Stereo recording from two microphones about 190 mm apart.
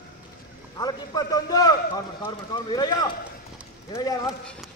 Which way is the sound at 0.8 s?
20° left (ahead or behind).